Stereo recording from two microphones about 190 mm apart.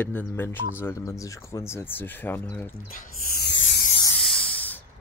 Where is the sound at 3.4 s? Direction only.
70° left (ahead or behind).